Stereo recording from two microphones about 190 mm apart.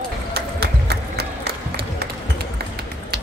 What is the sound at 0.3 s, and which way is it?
Music, 55° right (ahead or behind).